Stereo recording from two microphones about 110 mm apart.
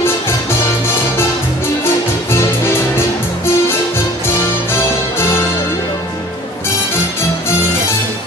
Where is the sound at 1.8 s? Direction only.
20° left (ahead or behind).